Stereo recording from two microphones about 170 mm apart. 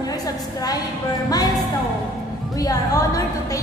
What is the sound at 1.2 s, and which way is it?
Speech, 20° left (ahead or behind).